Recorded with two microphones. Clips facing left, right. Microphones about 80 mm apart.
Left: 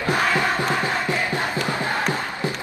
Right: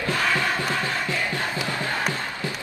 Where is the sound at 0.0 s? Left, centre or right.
Left.